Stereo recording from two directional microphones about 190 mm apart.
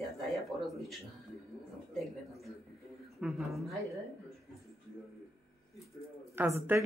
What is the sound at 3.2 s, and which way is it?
Speech, centre (ahead or behind).